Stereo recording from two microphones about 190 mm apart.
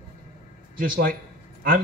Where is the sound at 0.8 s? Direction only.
50° right (ahead or behind).